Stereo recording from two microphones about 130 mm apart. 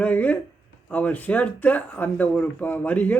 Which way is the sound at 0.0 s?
10° left (ahead or behind).